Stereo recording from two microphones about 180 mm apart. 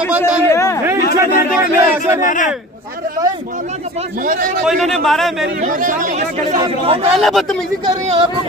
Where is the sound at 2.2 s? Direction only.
45° left (ahead or behind).